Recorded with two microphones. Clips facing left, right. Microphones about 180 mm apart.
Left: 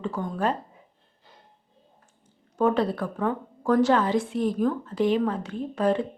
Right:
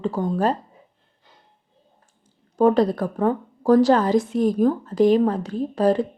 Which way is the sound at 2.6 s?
40° right (ahead or behind).